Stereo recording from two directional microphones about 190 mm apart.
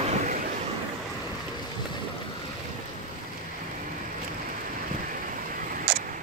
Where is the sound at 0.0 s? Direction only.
40° right (ahead or behind).